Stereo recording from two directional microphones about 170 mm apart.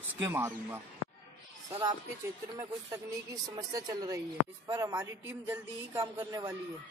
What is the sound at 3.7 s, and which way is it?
Speech, 20° right (ahead or behind).